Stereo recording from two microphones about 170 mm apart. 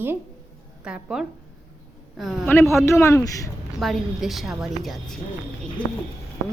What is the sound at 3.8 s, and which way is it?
A woman's voice, centre (ahead or behind).